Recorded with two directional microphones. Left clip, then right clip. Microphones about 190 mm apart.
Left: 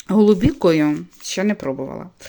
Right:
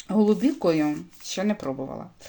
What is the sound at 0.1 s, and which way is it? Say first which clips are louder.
Speech: left 7 dB; 50° left (ahead or behind).